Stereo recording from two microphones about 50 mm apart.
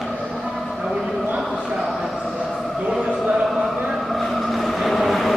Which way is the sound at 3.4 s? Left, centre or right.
Centre.